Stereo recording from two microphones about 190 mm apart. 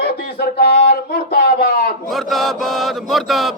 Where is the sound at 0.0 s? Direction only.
60° left (ahead or behind).